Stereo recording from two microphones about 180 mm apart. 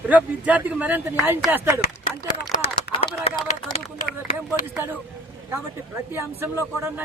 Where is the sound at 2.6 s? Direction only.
30° left (ahead or behind).